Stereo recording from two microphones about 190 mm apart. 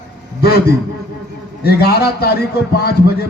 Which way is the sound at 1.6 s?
55° left (ahead or behind).